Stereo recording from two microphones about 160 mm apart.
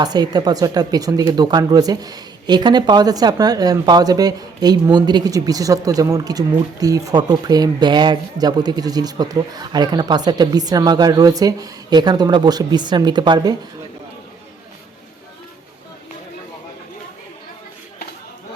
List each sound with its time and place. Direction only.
0.0 s speech: 25° right (ahead or behind)